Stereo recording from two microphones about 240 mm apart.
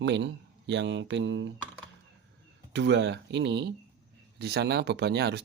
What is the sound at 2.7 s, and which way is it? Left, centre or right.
Speech, right.